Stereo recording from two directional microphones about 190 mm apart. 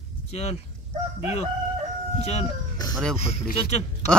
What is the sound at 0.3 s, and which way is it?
Speech, 35° left (ahead or behind).